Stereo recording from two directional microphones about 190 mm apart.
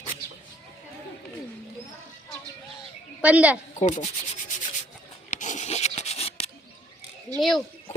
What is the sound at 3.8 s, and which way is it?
Sanding, 40° left (ahead or behind).